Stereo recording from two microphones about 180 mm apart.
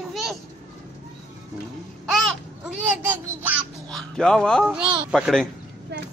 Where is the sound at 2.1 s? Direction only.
Centre (ahead or behind).